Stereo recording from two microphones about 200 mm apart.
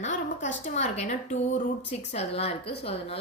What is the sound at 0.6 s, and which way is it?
Speech, 35° left (ahead or behind).